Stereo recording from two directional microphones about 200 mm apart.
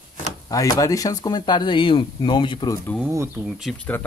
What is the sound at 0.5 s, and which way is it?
Speech, 15° left (ahead or behind).